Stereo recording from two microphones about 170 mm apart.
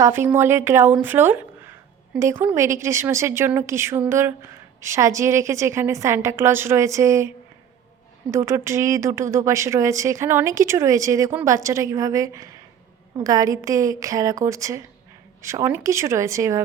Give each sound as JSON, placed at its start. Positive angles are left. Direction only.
{"t": 0.0, "sound": "a woman's voice", "side_deg": -15}